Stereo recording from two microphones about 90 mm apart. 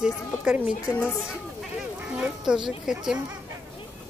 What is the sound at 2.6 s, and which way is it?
Speech, 5° right (ahead or behind).